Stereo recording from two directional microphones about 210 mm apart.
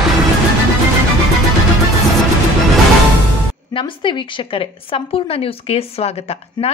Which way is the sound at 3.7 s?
25° left (ahead or behind).